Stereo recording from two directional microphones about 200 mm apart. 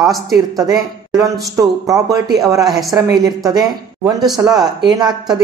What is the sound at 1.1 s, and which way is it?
Speech, 15° right (ahead or behind).